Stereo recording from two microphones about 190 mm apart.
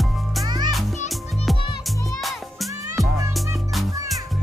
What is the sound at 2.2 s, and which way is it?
Music, centre (ahead or behind).